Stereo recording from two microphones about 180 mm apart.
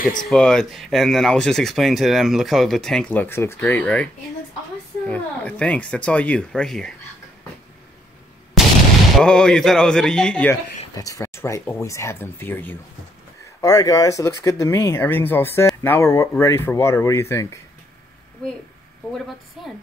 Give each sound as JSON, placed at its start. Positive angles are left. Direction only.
{"t": 0.3, "sound": "speech", "side_deg": 5}
{"t": 9.1, "sound": "speech", "side_deg": 5}
{"t": 11.0, "sound": "speech", "side_deg": 20}